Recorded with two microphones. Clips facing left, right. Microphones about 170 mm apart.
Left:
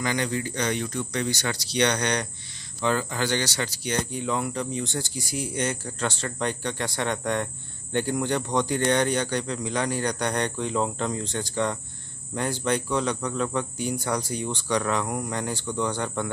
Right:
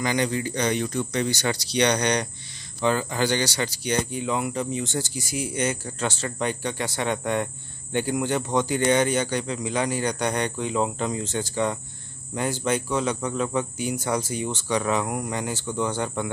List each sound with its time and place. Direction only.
0.0 s speech: 15° right (ahead or behind)